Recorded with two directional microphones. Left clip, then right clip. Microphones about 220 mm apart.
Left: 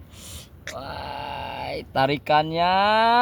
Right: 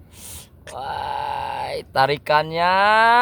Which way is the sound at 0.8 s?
45° right (ahead or behind).